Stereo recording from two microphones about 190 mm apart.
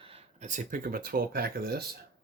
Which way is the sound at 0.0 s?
30° right (ahead or behind).